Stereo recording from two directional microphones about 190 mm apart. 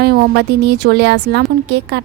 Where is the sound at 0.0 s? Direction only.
55° right (ahead or behind).